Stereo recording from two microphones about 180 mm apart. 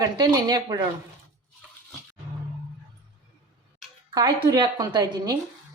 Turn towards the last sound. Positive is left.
turn(degrees=-25)  # may be behind; listen again after turning